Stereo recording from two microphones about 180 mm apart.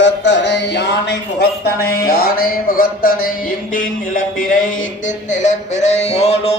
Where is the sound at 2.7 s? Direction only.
55° left (ahead or behind).